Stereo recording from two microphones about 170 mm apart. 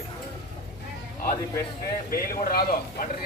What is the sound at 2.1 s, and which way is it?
Speech, 60° left (ahead or behind).